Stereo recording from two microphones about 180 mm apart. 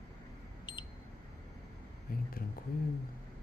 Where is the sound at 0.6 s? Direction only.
25° left (ahead or behind).